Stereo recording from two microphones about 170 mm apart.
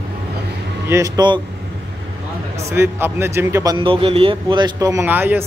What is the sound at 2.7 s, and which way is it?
A man's voice, 15° right (ahead or behind).